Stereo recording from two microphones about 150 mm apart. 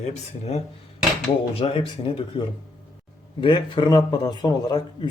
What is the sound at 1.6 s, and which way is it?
Speech, 35° left (ahead or behind).